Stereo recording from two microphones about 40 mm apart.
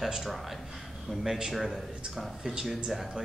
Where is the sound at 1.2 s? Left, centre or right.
Centre.